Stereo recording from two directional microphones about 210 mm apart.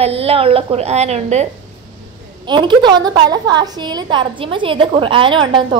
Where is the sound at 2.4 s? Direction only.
20° right (ahead or behind).